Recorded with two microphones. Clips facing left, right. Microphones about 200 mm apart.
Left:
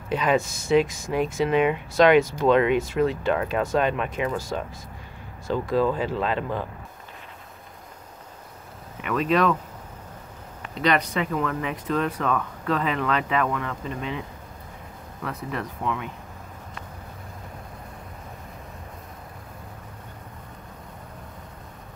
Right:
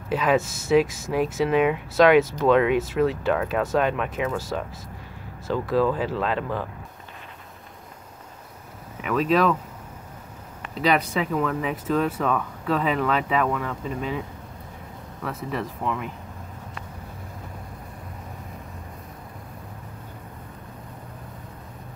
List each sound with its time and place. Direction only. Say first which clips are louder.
0.1 s speech: right 1 dB; 5° right (ahead or behind)
9.0 s speech: right 1 dB; centre (ahead or behind)
10.7 s speech: right 1 dB; 5° right (ahead or behind)
15.2 s speech: right 2 dB; centre (ahead or behind)